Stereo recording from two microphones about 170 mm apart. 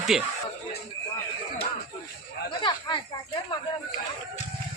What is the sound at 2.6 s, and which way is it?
Snake, 25° left (ahead or behind).